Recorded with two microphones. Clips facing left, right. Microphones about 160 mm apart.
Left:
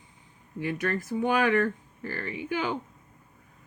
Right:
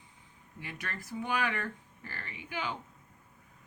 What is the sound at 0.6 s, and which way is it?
Speech, 50° left (ahead or behind).